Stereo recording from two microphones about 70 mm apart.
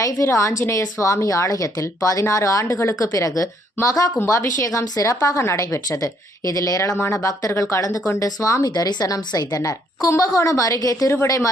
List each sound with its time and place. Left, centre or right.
0.0 s a woman's voice: left
3.1 s a woman's voice: left
5.4 s a woman's voice: left
7.0 s speech: left
7.8 s speech: left
8.0 s a woman's voice: left
8.7 s a woman's voice: left
9.6 s a woman's voice: left